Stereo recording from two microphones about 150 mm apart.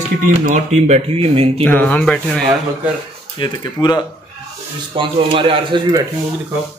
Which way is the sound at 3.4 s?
30° left (ahead or behind).